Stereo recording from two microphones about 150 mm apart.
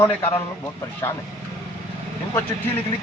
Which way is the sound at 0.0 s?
15° left (ahead or behind).